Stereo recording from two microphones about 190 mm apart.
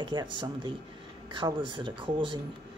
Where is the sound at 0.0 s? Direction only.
25° right (ahead or behind).